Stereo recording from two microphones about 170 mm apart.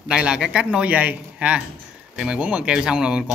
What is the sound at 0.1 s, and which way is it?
Speech, 5° right (ahead or behind).